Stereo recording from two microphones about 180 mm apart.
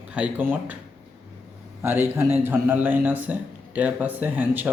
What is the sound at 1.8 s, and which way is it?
A man's voice, 10° right (ahead or behind).